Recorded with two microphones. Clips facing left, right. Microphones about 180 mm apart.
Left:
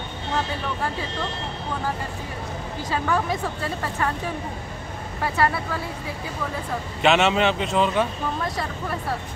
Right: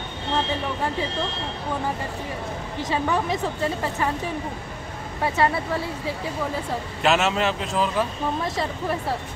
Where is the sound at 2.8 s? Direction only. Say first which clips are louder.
Even; 20° right (ahead or behind).